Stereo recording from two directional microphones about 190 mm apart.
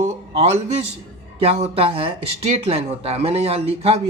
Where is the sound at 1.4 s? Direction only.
30° right (ahead or behind).